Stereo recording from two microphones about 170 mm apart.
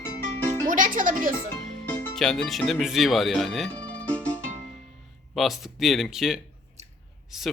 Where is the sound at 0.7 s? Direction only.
50° right (ahead or behind).